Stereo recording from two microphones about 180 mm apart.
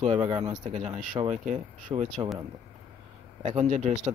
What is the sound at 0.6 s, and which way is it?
Speech, 40° right (ahead or behind).